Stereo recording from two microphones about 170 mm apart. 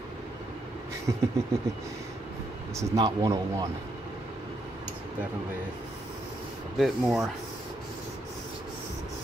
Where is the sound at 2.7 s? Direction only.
25° right (ahead or behind).